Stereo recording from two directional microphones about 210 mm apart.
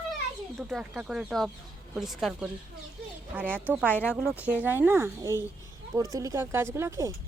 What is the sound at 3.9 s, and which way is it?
Speech, 10° left (ahead or behind).